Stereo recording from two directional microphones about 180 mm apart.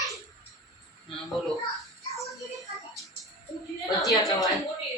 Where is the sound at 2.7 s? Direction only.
Centre (ahead or behind).